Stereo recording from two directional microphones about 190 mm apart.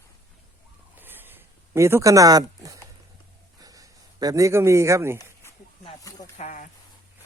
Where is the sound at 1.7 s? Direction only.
15° right (ahead or behind).